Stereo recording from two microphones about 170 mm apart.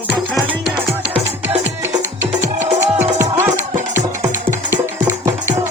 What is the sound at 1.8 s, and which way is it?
Music, 15° right (ahead or behind).